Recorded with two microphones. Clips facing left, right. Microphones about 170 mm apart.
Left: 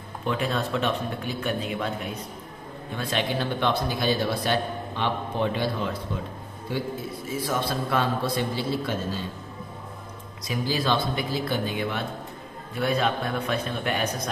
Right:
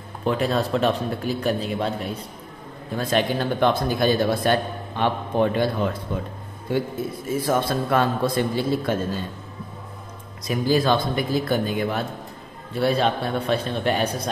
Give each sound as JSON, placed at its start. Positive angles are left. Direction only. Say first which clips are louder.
{"t": 0.2, "sound": "a man's voice", "louder": "right 5 dB", "side_deg": -35}
{"t": 3.0, "sound": "speech", "louder": "right 5 dB", "side_deg": -45}
{"t": 6.7, "sound": "speech", "louder": "right 5 dB", "side_deg": -50}
{"t": 10.4, "sound": "speech", "louder": "right 6 dB", "side_deg": -50}
{"t": 12.7, "sound": "a man's voice", "louder": "right 4 dB", "side_deg": -30}